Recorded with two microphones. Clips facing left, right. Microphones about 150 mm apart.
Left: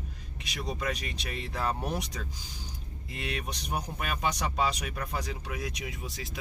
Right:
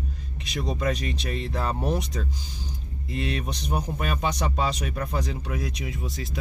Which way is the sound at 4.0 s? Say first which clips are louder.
Right 3 dB; 30° right (ahead or behind).